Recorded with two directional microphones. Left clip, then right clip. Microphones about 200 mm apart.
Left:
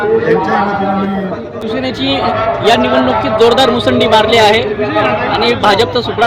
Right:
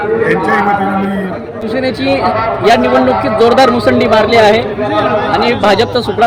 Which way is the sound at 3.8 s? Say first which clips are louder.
Even; 40° right (ahead or behind).